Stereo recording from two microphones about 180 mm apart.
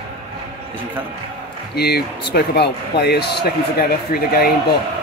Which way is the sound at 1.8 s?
60° left (ahead or behind).